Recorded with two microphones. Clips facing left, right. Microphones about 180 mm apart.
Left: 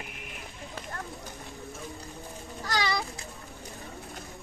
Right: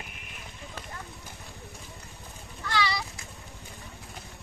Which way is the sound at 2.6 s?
45° left (ahead or behind).